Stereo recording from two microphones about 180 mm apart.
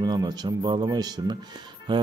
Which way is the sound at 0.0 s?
20° right (ahead or behind).